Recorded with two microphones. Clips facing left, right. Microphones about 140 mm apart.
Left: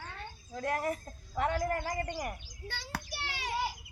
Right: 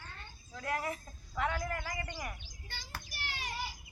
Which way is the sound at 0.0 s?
90° left.